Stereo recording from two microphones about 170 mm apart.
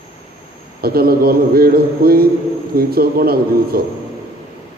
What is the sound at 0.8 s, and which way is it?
A man's voice, 65° right (ahead or behind).